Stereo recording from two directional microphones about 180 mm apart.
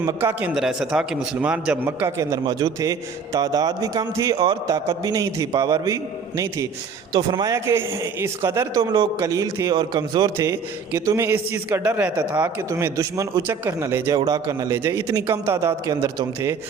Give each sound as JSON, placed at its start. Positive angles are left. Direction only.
{"t": 0.0, "sound": "a man's voice", "side_deg": -15}
{"t": 8.8, "sound": "a man's voice", "side_deg": -25}
{"t": 9.1, "sound": "a man's voice", "side_deg": -15}